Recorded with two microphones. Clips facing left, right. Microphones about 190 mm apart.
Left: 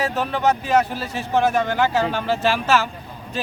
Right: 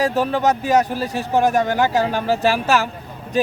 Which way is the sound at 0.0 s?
40° right (ahead or behind).